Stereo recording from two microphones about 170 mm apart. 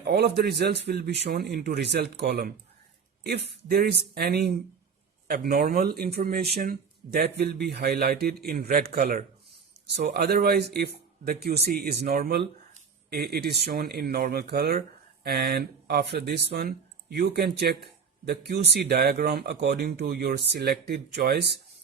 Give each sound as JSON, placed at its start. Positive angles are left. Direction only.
{"t": 0.0, "sound": "speech", "side_deg": -75}